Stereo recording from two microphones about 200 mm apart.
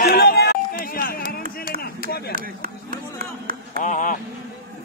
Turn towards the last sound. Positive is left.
turn(degrees=40)  # may be behind; listen again after turning